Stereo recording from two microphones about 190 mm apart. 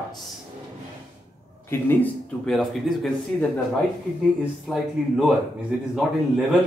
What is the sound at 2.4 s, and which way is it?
A man's voice, centre (ahead or behind).